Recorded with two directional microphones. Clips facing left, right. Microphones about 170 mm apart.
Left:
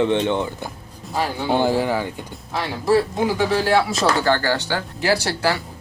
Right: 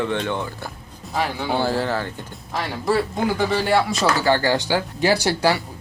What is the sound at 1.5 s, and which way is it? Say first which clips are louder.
Speech: left 4 dB; 15° left (ahead or behind).